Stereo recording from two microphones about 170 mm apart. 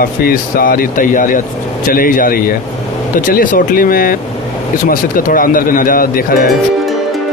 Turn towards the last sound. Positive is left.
turn(degrees=55)  # may be behind; listen again after turning